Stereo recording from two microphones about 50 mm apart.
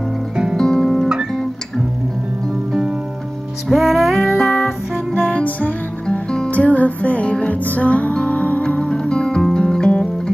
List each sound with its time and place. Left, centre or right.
0.6 s guitar: centre
3.6 s music: centre
5.3 s music: left
6.0 s music: centre
6.5 s music: left
8.6 s music: centre